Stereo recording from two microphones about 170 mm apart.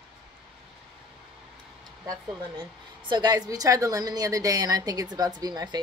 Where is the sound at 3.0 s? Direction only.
25° right (ahead or behind).